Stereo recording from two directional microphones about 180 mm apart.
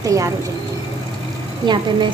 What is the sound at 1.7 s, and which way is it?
Speech, 25° right (ahead or behind).